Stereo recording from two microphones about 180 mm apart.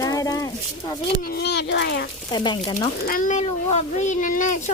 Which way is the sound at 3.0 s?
50° left (ahead or behind).